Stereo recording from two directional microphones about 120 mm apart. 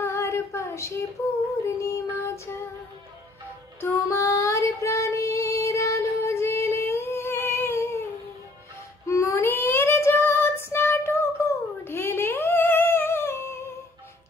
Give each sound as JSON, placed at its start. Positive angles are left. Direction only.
{"t": 0.0, "sound": "a sound", "side_deg": 20}
{"t": 1.8, "sound": "child singing", "side_deg": 25}
{"t": 3.8, "sound": "child singing", "side_deg": 25}
{"t": 9.0, "sound": "child singing", "side_deg": 25}
{"t": 11.4, "sound": "a sound", "side_deg": 25}
{"t": 11.8, "sound": "humming", "side_deg": 20}